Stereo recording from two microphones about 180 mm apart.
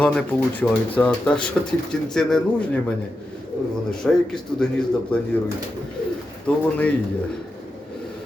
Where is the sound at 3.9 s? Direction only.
5° left (ahead or behind).